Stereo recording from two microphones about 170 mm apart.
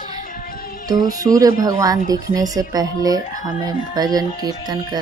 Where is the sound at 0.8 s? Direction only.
20° right (ahead or behind).